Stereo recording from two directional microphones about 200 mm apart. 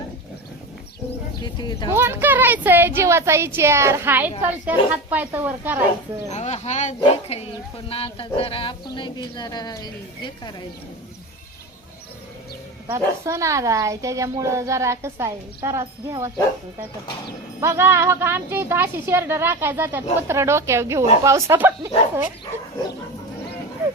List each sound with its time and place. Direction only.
1.4 s speech: 20° left (ahead or behind)
1.9 s speech: 10° right (ahead or behind)
6.3 s speech: 35° left (ahead or behind)
12.9 s speech: 15° right (ahead or behind)
17.6 s speech: 15° right (ahead or behind)